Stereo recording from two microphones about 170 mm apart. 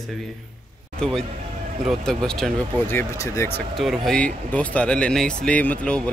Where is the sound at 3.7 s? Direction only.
Centre (ahead or behind).